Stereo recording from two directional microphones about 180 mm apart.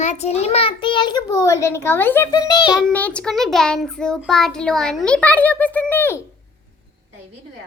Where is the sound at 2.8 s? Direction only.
5° left (ahead or behind).